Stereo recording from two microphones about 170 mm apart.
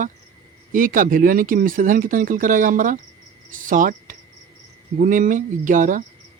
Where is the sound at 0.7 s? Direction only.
50° right (ahead or behind).